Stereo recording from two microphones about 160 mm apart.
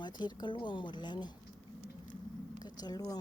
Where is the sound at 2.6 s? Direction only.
25° left (ahead or behind).